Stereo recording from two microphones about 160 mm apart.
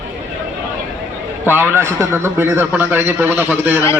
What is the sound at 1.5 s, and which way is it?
A man's voice, 15° right (ahead or behind).